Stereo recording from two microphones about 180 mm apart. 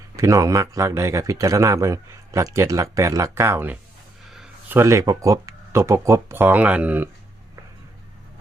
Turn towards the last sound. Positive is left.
turn(degrees=-10)  # may be behind; listen again after turning